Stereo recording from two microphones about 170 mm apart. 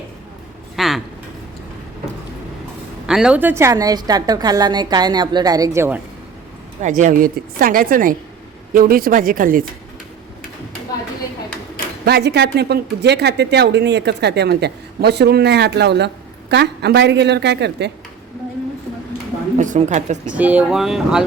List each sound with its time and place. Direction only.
0.8 s a sound: centre (ahead or behind)
3.1 s a woman's voice: 5° right (ahead or behind)
6.8 s a woman's voice: 45° right (ahead or behind)
12.0 s speech: 75° right (ahead or behind)
19.5 s a woman's voice: 45° right (ahead or behind)
20.3 s speech: 10° right (ahead or behind)